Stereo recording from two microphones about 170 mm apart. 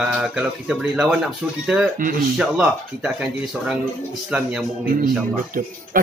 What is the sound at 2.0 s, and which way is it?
Speech, 55° right (ahead or behind).